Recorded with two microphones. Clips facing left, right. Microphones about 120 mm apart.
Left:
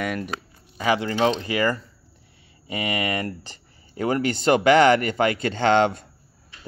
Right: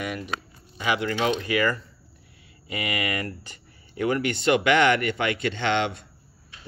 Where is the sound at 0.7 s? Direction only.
35° left (ahead or behind).